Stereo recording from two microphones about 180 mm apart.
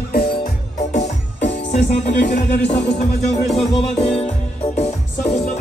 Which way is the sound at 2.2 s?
75° left (ahead or behind).